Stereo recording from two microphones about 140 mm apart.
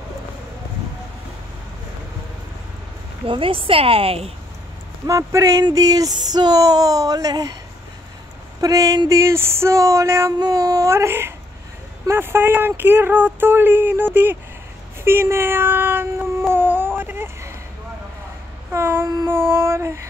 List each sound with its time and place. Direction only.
3.3 s a woman's voice: 40° right (ahead or behind)
5.0 s a sound: 20° right (ahead or behind)
8.5 s a sound: 25° right (ahead or behind)
12.1 s speech: 15° right (ahead or behind)
15.0 s cat: 20° right (ahead or behind)
18.7 s child singing: 15° right (ahead or behind)